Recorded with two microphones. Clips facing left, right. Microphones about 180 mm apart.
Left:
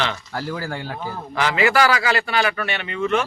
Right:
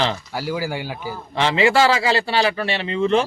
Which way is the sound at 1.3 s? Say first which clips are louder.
Right 2 dB; 25° right (ahead or behind).